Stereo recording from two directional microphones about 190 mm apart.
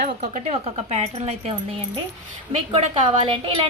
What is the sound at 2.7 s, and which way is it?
Speech, 25° right (ahead or behind).